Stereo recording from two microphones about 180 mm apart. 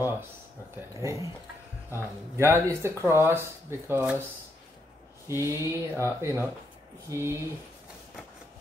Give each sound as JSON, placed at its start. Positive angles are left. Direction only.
{"t": 0.9, "sound": "speech", "side_deg": -15}
{"t": 5.3, "sound": "speech", "side_deg": -15}